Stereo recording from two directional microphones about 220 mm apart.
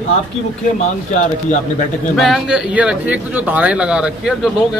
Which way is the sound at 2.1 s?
Centre (ahead or behind).